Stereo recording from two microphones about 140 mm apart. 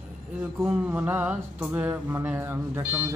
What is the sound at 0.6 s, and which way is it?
A man's voice, 15° right (ahead or behind).